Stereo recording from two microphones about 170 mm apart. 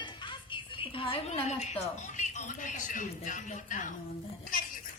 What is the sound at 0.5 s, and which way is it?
A woman's voice, 30° left (ahead or behind).